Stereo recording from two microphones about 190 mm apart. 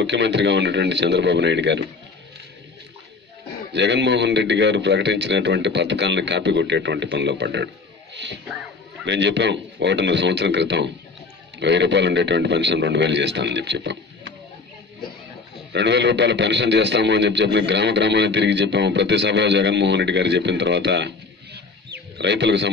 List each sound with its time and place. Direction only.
0.0 s a man's voice: 70° right (ahead or behind)
3.7 s a man's voice: 65° right (ahead or behind)
9.0 s a man's voice: 65° right (ahead or behind)
15.7 s a man's voice: 65° right (ahead or behind)
21.5 s wild animals: 65° right (ahead or behind)